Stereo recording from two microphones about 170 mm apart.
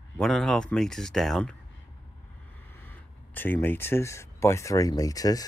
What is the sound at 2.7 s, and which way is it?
Speech, 10° left (ahead or behind).